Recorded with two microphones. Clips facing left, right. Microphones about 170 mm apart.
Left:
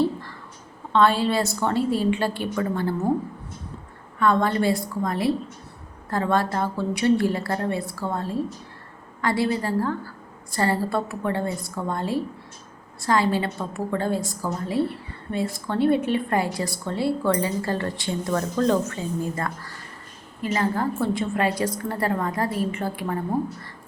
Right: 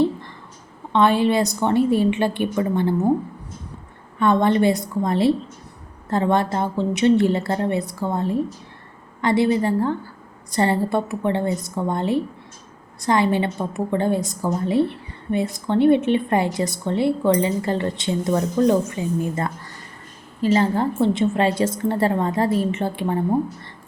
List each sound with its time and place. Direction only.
0.0 s a sound: 20° right (ahead or behind)
0.9 s a woman's voice: 20° right (ahead or behind)
4.2 s a woman's voice: 20° right (ahead or behind)